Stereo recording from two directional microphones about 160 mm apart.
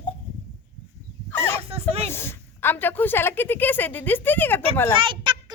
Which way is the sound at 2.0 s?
15° left (ahead or behind).